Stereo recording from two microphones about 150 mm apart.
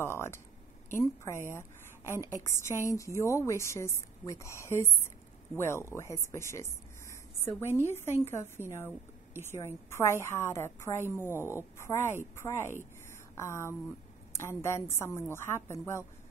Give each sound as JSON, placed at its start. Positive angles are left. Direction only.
{"t": 0.0, "sound": "a woman's voice", "side_deg": 15}